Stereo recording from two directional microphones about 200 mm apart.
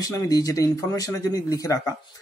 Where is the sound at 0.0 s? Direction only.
20° left (ahead or behind).